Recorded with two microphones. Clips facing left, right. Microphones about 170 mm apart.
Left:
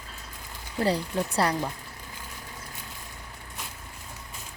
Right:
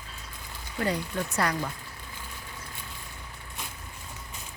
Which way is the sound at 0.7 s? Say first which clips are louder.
Left 3 dB; 30° left (ahead or behind).